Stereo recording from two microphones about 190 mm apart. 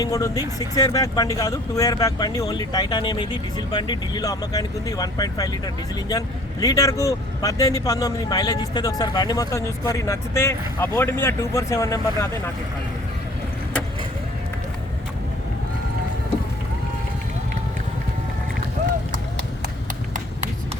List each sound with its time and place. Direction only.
0.0 s speech: 20° left (ahead or behind)